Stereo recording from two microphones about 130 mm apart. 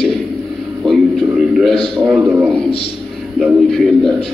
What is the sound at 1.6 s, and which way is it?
Speech, centre (ahead or behind).